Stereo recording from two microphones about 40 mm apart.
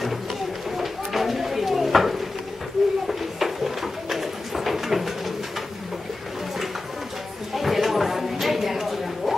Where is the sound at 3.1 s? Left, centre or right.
Centre.